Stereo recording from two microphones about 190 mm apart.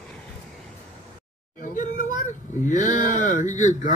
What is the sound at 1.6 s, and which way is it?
Speech, 45° left (ahead or behind).